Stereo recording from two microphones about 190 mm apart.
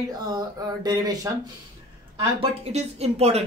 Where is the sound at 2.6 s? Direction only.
35° right (ahead or behind).